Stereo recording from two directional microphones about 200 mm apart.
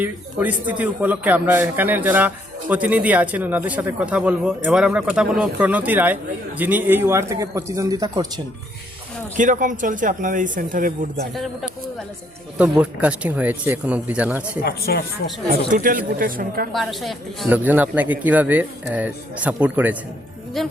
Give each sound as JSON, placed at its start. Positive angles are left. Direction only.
{"t": 0.0, "sound": "a man's voice", "side_deg": -10}
{"t": 9.4, "sound": "speech", "side_deg": -40}
{"t": 12.5, "sound": "a man's voice", "side_deg": -5}
{"t": 14.6, "sound": "speech", "side_deg": 50}
{"t": 15.4, "sound": "speech", "side_deg": -45}
{"t": 16.7, "sound": "a man's voice", "side_deg": 0}